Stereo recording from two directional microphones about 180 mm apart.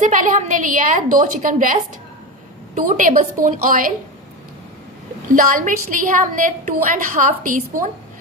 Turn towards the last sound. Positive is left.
turn(degrees=-50)  # may be behind; listen again after turning